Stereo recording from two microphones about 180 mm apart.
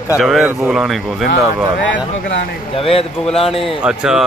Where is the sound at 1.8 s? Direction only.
90° left.